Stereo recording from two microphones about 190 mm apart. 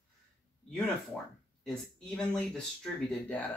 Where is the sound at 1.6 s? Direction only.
5° left (ahead or behind).